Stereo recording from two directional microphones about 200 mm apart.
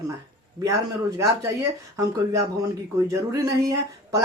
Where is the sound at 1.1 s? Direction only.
15° right (ahead or behind).